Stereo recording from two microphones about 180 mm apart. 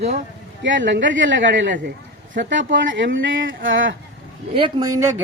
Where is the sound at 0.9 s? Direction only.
90° right.